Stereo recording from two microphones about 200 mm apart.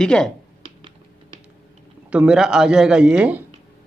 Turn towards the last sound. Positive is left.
turn(degrees=-5)  # may be behind; listen again after turning